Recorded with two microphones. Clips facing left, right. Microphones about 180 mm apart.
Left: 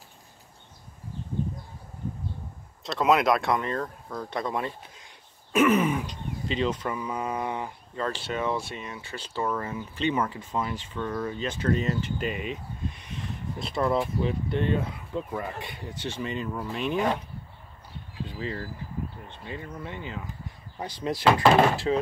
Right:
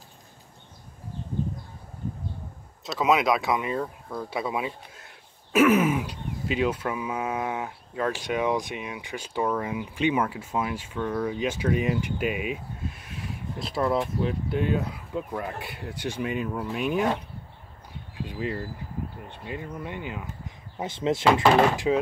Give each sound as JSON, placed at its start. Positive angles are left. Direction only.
{"t": 2.8, "sound": "speech", "side_deg": 0}
{"t": 18.2, "sound": "speech", "side_deg": -10}
{"t": 20.7, "sound": "speech", "side_deg": -25}